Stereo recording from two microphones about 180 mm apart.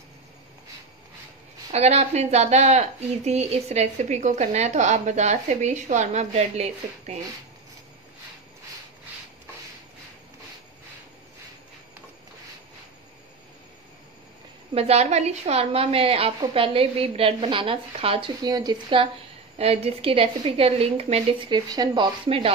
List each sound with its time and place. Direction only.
1.7 s speech: 35° right (ahead or behind)
14.7 s speech: 35° right (ahead or behind)